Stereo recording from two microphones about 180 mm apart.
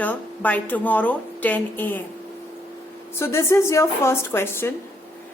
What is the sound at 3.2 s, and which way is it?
A woman's voice, 15° left (ahead or behind).